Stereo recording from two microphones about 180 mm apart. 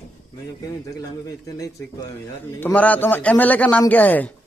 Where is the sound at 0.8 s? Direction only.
20° left (ahead or behind).